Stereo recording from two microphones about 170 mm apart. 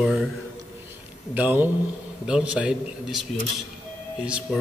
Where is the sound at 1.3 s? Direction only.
10° right (ahead or behind).